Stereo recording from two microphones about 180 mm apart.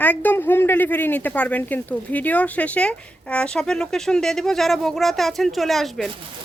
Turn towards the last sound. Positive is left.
turn(degrees=0)  # may be behind; listen again after turning